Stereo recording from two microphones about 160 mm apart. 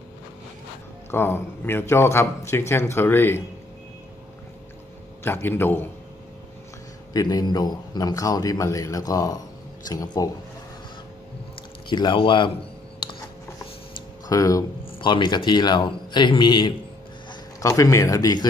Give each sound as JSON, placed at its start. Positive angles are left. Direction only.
{"t": 1.1, "sound": "a man's voice", "side_deg": 15}
{"t": 5.2, "sound": "a man's voice", "side_deg": 15}
{"t": 7.2, "sound": "speech", "side_deg": 25}
{"t": 11.9, "sound": "a man's voice", "side_deg": 30}
{"t": 13.0, "sound": "a sound", "side_deg": 30}
{"t": 14.3, "sound": "a man's voice", "side_deg": 20}